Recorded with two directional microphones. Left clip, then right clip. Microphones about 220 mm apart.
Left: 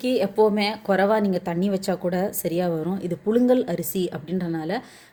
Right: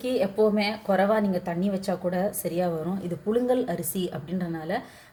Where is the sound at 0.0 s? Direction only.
45° left (ahead or behind).